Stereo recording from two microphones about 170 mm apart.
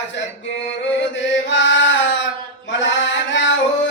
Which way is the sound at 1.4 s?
90° left.